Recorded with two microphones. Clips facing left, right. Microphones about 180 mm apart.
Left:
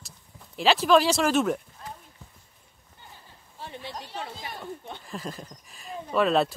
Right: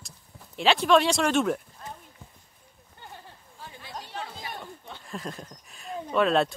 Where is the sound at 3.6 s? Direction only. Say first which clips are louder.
Left 7 dB; 70° left (ahead or behind).